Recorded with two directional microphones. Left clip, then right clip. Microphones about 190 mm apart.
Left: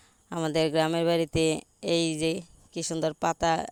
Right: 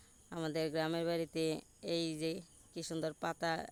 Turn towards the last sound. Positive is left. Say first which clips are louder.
# left 12 dB
turn(degrees=35)  # may be behind; listen again after turning